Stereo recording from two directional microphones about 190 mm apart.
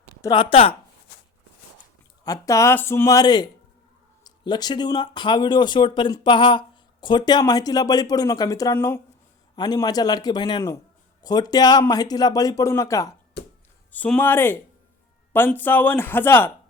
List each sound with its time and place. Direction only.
0.2 s speech: 25° left (ahead or behind)
2.2 s speech: 20° left (ahead or behind)
13.4 s chopping: 60° left (ahead or behind)
13.9 s speech: 10° left (ahead or behind)